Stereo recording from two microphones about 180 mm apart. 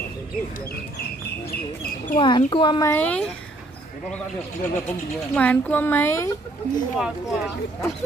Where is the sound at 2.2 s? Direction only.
25° left (ahead or behind); by 3.2 s 10° left (ahead or behind).